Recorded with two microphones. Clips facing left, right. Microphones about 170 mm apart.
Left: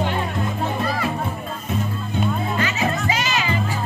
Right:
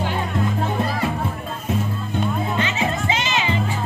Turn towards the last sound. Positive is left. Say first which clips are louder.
# even
turn(degrees=-25)  # may be behind; listen again after turning